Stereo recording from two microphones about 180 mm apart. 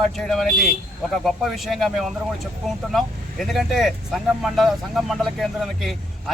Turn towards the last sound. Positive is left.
turn(degrees=0)  # may be behind; listen again after turning